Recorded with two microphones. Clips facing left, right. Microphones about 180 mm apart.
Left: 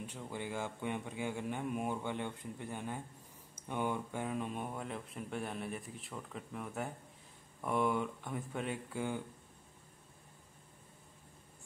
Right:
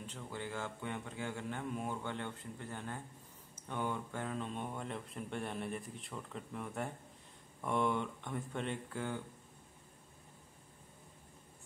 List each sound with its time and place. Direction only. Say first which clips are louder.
0.0 s a man's voice: left 2 dB; 15° left (ahead or behind)